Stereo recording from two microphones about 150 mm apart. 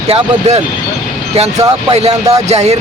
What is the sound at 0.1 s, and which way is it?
Speech, 45° right (ahead or behind).